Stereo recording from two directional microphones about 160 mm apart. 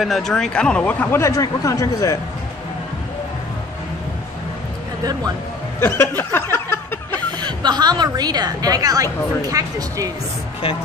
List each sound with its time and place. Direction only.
0.0 s speech: centre (ahead or behind); by 2.1 s 20° left (ahead or behind)
5.8 s a sound: 15° left (ahead or behind)
7.4 s a woman's voice: 25° right (ahead or behind)